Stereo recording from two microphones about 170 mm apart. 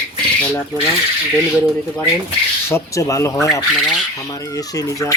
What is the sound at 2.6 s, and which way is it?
Speech, 15° left (ahead or behind).